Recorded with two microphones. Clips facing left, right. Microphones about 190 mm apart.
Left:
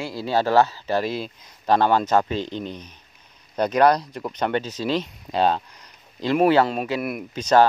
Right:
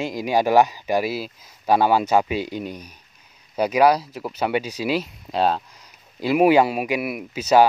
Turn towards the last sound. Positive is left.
turn(degrees=-10)  # may be behind; listen again after turning